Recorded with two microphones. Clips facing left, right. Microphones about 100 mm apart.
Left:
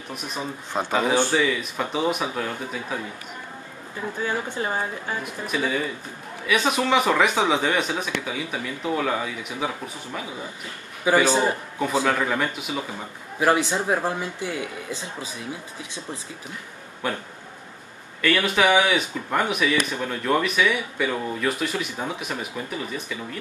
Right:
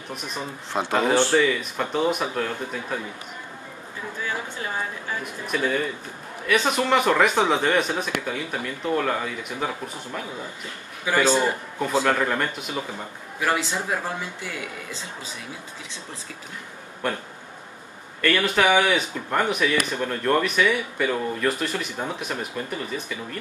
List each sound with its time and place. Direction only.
0.1 s speech: centre (ahead or behind)
5.5 s speech: 5° left (ahead or behind)
11.1 s speech: 15° left (ahead or behind)
13.4 s speech: 20° left (ahead or behind)
18.2 s speech: 5° left (ahead or behind)